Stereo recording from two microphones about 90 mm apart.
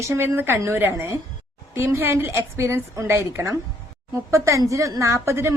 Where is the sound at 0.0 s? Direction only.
30° right (ahead or behind).